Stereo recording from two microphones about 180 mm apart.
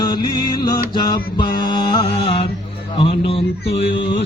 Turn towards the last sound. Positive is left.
turn(degrees=30)  # may be behind; listen again after turning